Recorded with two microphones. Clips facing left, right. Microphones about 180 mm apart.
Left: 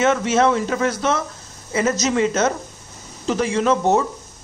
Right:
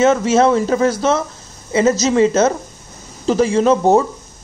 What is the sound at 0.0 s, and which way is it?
Speech, 30° right (ahead or behind).